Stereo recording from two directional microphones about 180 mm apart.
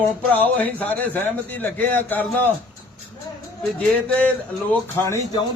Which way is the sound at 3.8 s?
5° left (ahead or behind).